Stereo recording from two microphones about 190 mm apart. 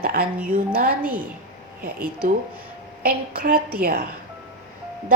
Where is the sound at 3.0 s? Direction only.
50° right (ahead or behind).